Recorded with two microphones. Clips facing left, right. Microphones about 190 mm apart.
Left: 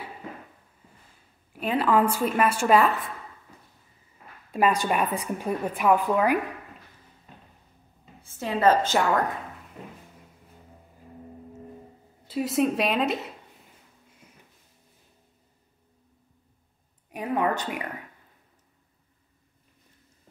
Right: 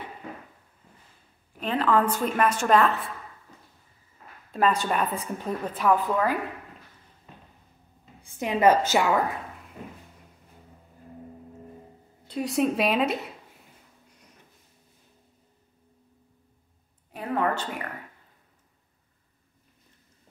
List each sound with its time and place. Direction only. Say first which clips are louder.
1.5 s a woman's voice: left 1 dB; 10° left (ahead or behind)
4.5 s a woman's voice: left 1 dB; 10° left (ahead or behind)
8.2 s a woman's voice: right 2 dB; 15° right (ahead or behind)
12.3 s a woman's voice: left 1 dB; centre (ahead or behind)
17.1 s a sound: left 1 dB; 15° left (ahead or behind)